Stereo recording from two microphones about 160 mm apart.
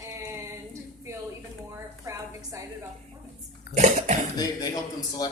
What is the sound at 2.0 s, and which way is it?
Speech, 20° right (ahead or behind).